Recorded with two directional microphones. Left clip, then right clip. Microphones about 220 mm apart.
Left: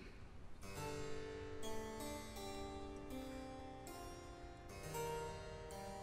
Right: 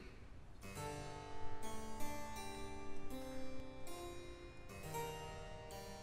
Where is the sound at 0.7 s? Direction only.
35° right (ahead or behind).